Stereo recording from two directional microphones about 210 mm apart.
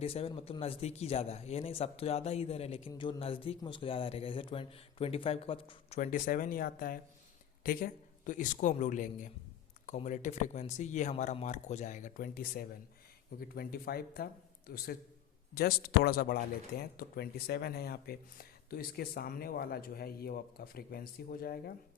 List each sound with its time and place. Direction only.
0.0 s speech: 30° left (ahead or behind)
6.0 s speech: 40° left (ahead or behind)